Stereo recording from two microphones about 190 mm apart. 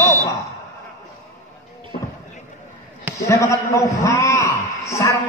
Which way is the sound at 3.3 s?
15° left (ahead or behind).